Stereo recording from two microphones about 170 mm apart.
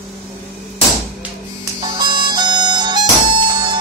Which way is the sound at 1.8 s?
25° right (ahead or behind).